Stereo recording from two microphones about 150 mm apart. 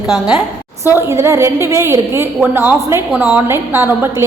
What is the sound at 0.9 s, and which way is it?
A woman's voice, 15° right (ahead or behind).